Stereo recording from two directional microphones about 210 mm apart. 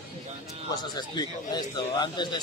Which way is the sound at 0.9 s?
20° left (ahead or behind).